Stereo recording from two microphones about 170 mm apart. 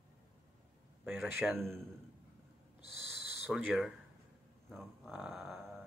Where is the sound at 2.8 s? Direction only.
75° left (ahead or behind).